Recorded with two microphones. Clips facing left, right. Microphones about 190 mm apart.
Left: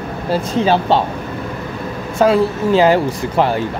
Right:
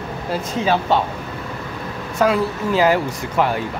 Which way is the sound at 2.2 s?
25° left (ahead or behind).